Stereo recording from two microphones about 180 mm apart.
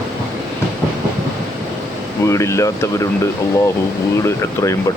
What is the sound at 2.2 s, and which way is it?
Speech, 15° left (ahead or behind).